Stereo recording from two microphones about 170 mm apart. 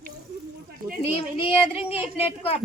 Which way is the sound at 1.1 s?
35° left (ahead or behind).